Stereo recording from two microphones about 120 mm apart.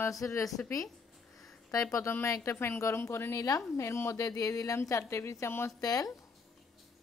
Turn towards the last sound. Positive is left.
turn(degrees=30)  # may be behind; listen again after turning